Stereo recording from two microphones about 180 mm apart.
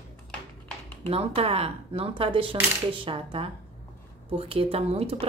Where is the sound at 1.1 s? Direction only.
30° right (ahead or behind).